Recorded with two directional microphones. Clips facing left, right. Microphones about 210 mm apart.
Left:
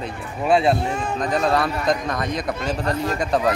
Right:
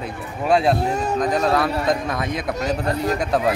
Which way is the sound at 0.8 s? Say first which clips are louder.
Right 3 dB; 40° right (ahead or behind).